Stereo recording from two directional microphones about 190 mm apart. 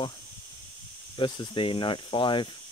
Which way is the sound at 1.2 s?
25° left (ahead or behind).